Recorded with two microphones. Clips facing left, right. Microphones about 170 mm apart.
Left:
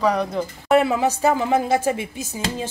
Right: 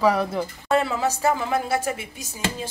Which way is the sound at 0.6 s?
15° left (ahead or behind).